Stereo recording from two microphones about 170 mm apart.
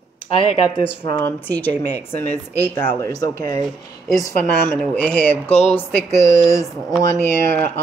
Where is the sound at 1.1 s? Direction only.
15° left (ahead or behind).